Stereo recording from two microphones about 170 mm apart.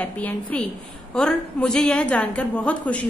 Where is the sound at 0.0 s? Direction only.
10° left (ahead or behind).